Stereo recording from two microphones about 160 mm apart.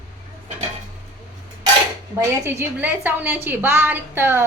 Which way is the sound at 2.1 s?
15° right (ahead or behind).